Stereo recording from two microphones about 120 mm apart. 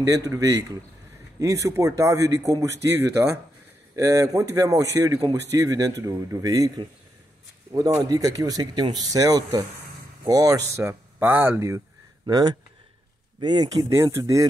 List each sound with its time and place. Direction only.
0.0 s a man's voice: 25° right (ahead or behind)
7.7 s a man's voice: 30° right (ahead or behind)
12.3 s a man's voice: 35° right (ahead or behind)